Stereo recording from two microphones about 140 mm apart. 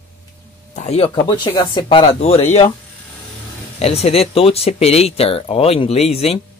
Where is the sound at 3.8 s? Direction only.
45° left (ahead or behind).